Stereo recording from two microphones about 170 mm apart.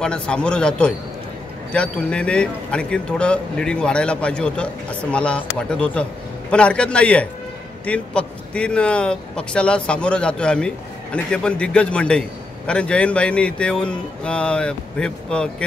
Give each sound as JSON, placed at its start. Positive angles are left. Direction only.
{"t": 0.0, "sound": "a man's voice", "side_deg": 5}